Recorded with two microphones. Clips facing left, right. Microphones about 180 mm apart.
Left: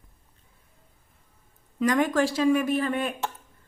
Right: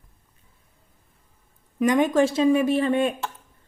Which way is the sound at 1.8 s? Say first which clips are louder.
Right 4 dB; 20° right (ahead or behind).